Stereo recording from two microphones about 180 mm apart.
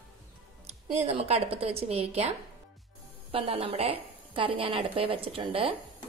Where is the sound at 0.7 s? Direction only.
35° right (ahead or behind).